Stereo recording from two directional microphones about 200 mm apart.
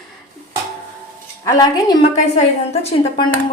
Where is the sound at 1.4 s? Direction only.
20° left (ahead or behind).